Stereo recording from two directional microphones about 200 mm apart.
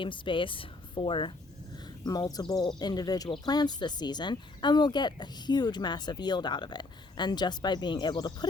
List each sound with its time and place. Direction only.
0.0 s speech: 25° left (ahead or behind)